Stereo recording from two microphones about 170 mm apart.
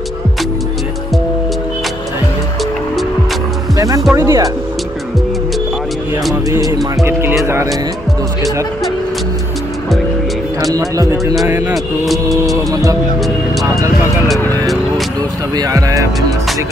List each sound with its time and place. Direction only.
3.7 s music: 20° right (ahead or behind)
4.1 s speech: 20° right (ahead or behind)
6.5 s speech: 20° right (ahead or behind)
10.7 s speech: 20° right (ahead or behind)
11.7 s speech: centre (ahead or behind)
12.5 s speech: 20° right (ahead or behind)
15.5 s speech: 20° right (ahead or behind)